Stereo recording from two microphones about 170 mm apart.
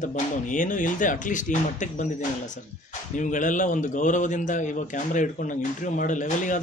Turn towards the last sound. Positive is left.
turn(degrees=50)  # may be behind; listen again after turning